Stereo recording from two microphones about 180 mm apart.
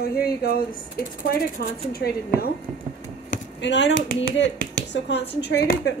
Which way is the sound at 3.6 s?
80° left.